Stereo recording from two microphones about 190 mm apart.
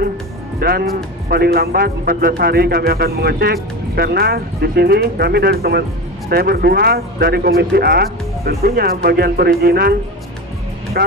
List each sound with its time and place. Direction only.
0.6 s speech: 55° right (ahead or behind)
11.0 s speech: 55° right (ahead or behind)